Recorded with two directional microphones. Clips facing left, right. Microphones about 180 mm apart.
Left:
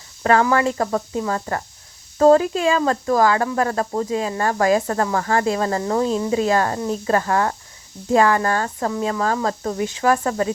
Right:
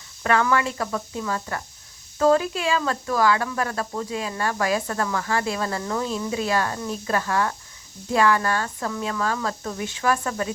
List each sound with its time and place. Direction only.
0.2 s speech: 35° left (ahead or behind)
8.9 s speech: 30° left (ahead or behind)